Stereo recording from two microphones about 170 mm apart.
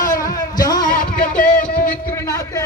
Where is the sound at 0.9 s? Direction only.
55° left (ahead or behind).